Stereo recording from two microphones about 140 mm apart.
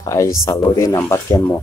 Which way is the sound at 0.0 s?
20° left (ahead or behind).